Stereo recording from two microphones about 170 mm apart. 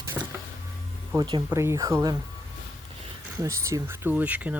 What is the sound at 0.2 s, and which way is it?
Power windows, 15° right (ahead or behind).